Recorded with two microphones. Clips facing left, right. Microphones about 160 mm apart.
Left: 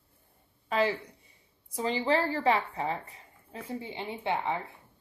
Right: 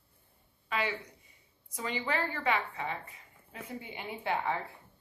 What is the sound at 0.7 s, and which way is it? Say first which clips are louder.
A woman's voice: left 6 dB; 35° left (ahead or behind).